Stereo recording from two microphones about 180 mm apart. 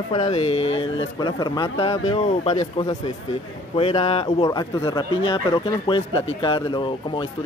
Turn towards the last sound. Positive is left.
turn(degrees=25)  # may be behind; listen again after turning